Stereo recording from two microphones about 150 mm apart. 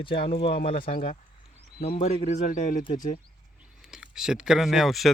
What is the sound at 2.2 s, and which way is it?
Speech, 55° left (ahead or behind).